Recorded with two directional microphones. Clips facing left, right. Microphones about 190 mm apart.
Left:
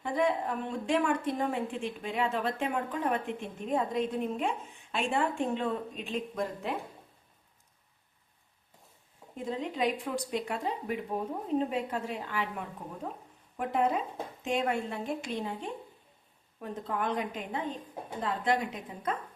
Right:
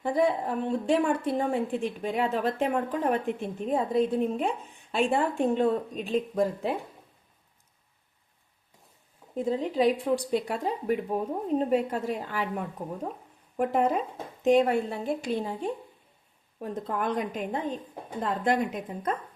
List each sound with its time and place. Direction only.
0.0 s a woman's voice: 35° right (ahead or behind)
9.3 s a woman's voice: 35° right (ahead or behind)
13.6 s a woman's voice: 45° right (ahead or behind)
14.4 s a woman's voice: 35° right (ahead or behind)